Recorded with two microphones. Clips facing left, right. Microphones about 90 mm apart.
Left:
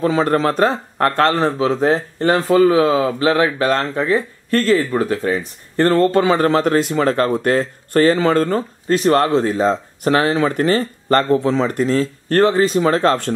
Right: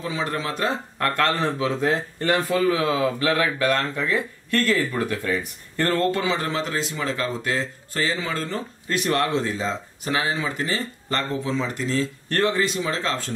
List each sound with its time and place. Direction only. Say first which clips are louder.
0.0 s speech: left 11 dB; 55° left (ahead or behind); by 6.2 s 35° left (ahead or behind)
6.2 s speech: left 10 dB; 50° left (ahead or behind)
8.9 s speech: left 8 dB; 35° left (ahead or behind); by 13.3 s 55° left (ahead or behind)